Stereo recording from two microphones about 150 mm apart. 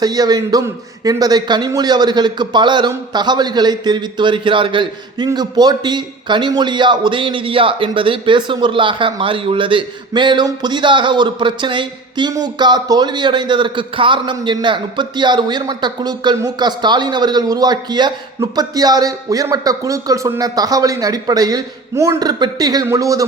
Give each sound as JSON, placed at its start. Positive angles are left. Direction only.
{"t": 0.0, "sound": "a man's voice", "side_deg": -25}